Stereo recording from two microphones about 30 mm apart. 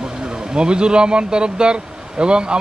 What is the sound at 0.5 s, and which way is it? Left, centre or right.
Speech, right.